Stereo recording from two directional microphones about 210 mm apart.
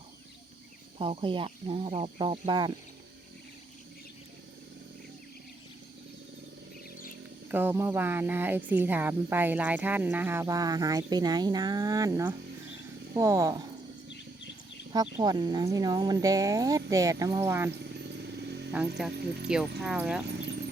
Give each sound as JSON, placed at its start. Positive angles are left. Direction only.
{"t": 0.9, "sound": "speech", "side_deg": -25}
{"t": 7.5, "sound": "speech", "side_deg": -10}
{"t": 15.2, "sound": "speech", "side_deg": -20}
{"t": 18.7, "sound": "speech", "side_deg": -5}